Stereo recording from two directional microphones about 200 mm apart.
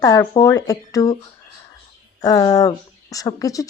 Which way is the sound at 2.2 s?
20° left (ahead or behind).